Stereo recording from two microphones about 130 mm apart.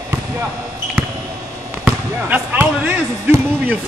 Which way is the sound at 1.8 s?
10° right (ahead or behind).